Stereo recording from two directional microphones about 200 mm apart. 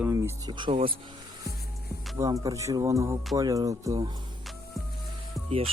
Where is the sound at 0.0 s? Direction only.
15° right (ahead or behind).